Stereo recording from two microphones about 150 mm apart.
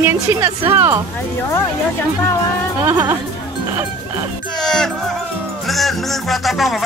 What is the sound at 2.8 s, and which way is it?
Speech, 15° right (ahead or behind).